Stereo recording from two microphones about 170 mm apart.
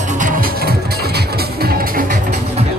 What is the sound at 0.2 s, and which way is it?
Music, 55° right (ahead or behind).